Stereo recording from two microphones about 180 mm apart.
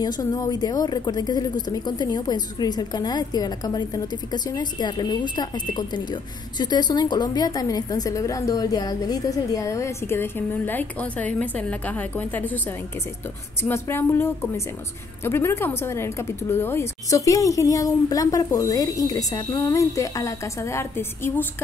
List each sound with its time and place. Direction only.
0.0 s a woman's voice: 20° left (ahead or behind)
13.6 s a woman's voice: 15° left (ahead or behind)